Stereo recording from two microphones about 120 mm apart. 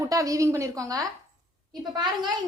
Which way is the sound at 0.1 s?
30° right (ahead or behind).